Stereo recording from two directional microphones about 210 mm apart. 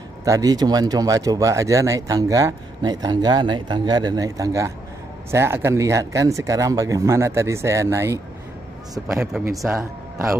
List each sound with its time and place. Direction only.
0.2 s speech: 15° right (ahead or behind)